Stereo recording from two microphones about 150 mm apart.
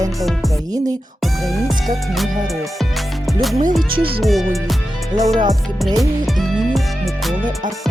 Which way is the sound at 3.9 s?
35° right (ahead or behind).